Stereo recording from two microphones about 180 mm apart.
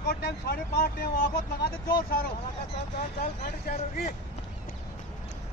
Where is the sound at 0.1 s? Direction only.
60° left (ahead or behind).